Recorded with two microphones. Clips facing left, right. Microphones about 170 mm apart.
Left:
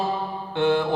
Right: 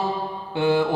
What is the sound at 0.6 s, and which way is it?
Speech, 5° right (ahead or behind).